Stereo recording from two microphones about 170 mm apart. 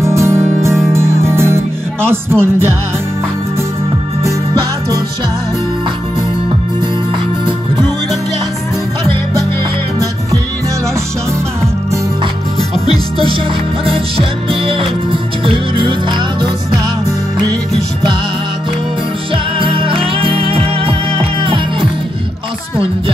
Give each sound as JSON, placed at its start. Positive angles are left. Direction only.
{"t": 0.0, "sound": "music", "side_deg": -15}
{"t": 13.9, "sound": "music", "side_deg": -30}
{"t": 19.3, "sound": "music", "side_deg": -30}